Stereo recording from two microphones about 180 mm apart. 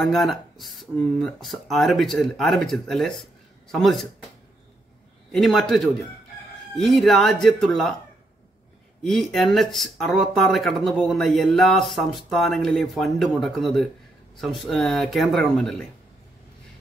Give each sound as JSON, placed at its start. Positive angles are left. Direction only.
{"t": 0.0, "sound": "speech", "side_deg": 0}
{"t": 5.3, "sound": "speech", "side_deg": 0}
{"t": 9.0, "sound": "speech", "side_deg": 0}